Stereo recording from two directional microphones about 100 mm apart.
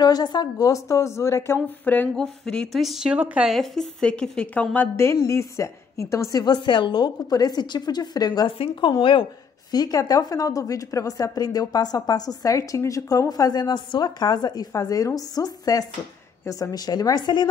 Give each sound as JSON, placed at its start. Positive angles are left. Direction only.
{"t": 0.0, "sound": "speech", "side_deg": 45}
{"t": 1.9, "sound": "a woman's voice", "side_deg": 15}
{"t": 2.2, "sound": "speech", "side_deg": 5}
{"t": 3.5, "sound": "a woman's voice", "side_deg": 10}
{"t": 4.9, "sound": "speech", "side_deg": 30}
{"t": 6.4, "sound": "a woman's voice", "side_deg": 50}
{"t": 8.5, "sound": "speech", "side_deg": 65}